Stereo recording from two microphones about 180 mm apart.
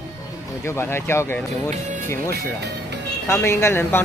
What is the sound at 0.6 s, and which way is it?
Speech, 15° left (ahead or behind).